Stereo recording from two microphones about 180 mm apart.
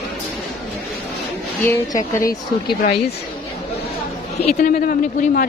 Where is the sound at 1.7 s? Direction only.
15° left (ahead or behind).